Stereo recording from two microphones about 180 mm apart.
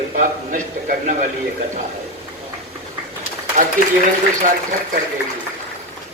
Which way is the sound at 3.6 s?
45° right (ahead or behind).